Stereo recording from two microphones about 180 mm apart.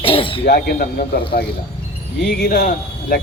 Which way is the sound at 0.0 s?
30° left (ahead or behind).